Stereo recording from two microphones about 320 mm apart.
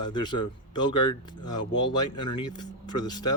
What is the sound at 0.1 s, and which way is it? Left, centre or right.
Speech, centre.